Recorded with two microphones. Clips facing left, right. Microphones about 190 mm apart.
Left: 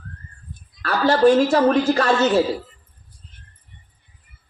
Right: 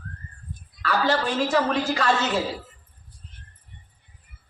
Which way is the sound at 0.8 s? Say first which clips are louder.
Left 8 dB; 50° left (ahead or behind).